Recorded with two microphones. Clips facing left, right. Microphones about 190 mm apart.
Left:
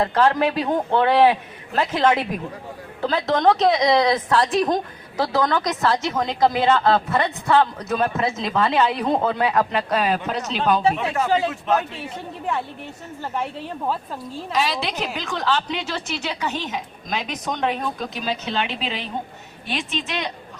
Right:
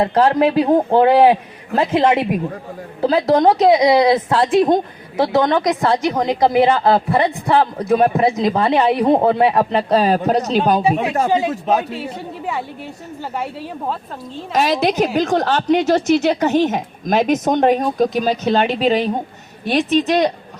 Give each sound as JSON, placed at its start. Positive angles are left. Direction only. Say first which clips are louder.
{"t": 0.0, "sound": "a woman's voice", "louder": "right 5 dB", "side_deg": -30}
{"t": 11.3, "sound": "speech", "louder": "right 1 dB", "side_deg": -15}
{"t": 14.5, "sound": "a woman's voice", "louder": "right 8 dB", "side_deg": -45}